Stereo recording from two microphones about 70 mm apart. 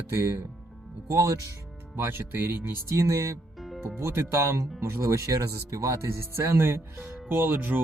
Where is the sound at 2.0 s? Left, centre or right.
Right.